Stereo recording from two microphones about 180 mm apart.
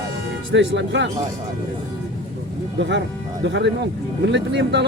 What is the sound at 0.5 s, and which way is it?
Speech, 90° right.